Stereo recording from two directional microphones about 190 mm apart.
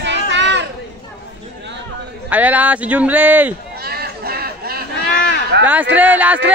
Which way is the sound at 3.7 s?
55° right (ahead or behind).